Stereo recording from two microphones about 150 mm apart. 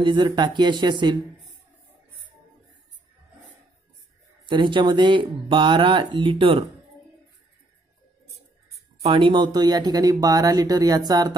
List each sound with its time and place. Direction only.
0.0 s speech: 30° right (ahead or behind)
4.5 s speech: 30° right (ahead or behind)
9.0 s speech: 35° right (ahead or behind)